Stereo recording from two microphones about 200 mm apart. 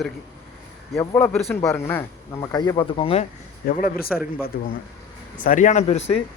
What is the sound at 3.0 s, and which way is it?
Speech, 30° left (ahead or behind).